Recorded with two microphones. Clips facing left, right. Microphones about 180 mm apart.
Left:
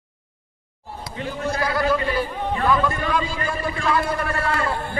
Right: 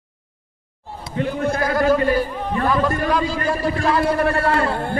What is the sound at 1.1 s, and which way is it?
A man's voice, 55° right (ahead or behind).